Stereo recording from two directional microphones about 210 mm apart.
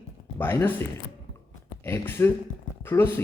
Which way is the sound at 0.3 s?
10° left (ahead or behind).